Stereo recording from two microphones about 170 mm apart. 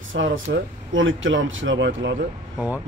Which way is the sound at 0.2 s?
90° right.